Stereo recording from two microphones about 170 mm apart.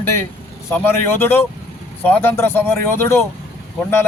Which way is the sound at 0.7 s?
15° left (ahead or behind).